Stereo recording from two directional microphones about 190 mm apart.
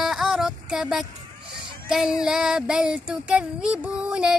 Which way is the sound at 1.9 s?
Centre (ahead or behind).